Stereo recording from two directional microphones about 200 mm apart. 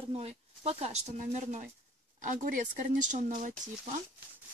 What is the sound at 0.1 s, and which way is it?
Speech, 30° right (ahead or behind).